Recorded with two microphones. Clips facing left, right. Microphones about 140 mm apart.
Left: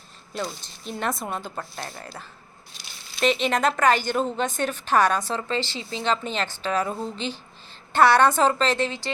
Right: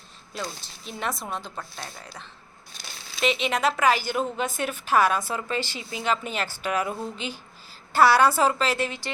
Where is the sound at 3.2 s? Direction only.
Centre (ahead or behind).